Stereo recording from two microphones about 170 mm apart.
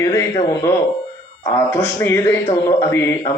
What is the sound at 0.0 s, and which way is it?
A man's voice, 15° left (ahead or behind).